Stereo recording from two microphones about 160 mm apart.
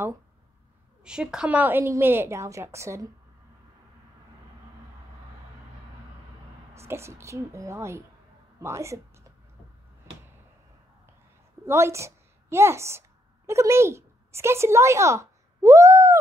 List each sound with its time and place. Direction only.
1.0 s a woman's voice: 5° right (ahead or behind)
6.7 s a woman's voice: 15° right (ahead or behind)
11.6 s a woman's voice: 15° right (ahead or behind)